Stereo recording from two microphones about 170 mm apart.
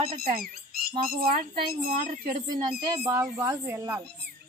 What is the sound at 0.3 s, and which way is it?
Speech, 60° right (ahead or behind).